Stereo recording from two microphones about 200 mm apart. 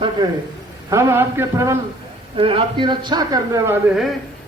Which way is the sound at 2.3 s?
25° right (ahead or behind).